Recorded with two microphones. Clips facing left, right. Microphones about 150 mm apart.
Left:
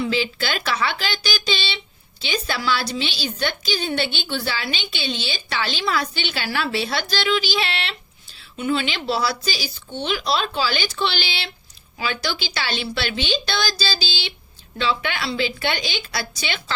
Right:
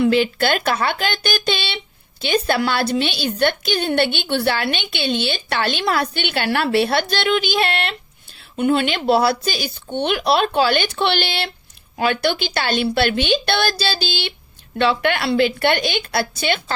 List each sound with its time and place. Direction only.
0.0 s a woman's voice: 55° right (ahead or behind)